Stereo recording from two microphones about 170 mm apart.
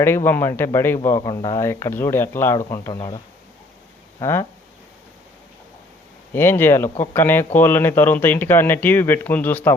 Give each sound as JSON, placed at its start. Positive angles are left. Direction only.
{"t": 0.0, "sound": "speech", "side_deg": 15}
{"t": 4.2, "sound": "speech", "side_deg": 15}
{"t": 6.3, "sound": "speech", "side_deg": 15}